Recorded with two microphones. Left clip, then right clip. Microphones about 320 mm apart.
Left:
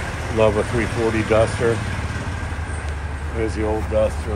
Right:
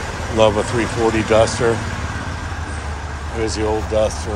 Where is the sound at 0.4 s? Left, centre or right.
Centre.